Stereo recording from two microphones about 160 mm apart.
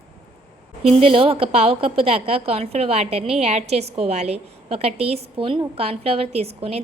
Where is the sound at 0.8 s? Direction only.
35° right (ahead or behind).